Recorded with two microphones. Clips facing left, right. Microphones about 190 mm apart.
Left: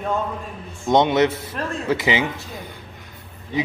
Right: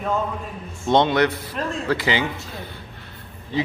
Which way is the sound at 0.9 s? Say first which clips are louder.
Left 1 dB; 20° left (ahead or behind).